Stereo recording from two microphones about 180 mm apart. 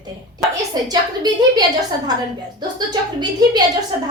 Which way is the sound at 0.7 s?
20° right (ahead or behind).